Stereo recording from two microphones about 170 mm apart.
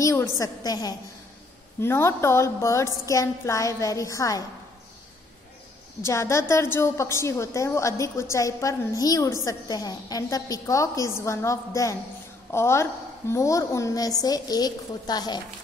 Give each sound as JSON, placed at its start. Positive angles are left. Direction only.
{"t": 0.0, "sound": "a woman's voice", "side_deg": 15}
{"t": 6.0, "sound": "a woman's voice", "side_deg": 15}